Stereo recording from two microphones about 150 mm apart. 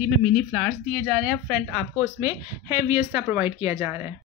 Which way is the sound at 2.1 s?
15° right (ahead or behind).